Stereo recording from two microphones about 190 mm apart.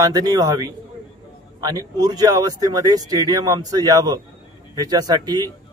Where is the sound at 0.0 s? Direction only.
20° right (ahead or behind).